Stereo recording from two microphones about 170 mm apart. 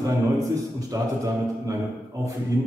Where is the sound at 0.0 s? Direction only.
20° right (ahead or behind).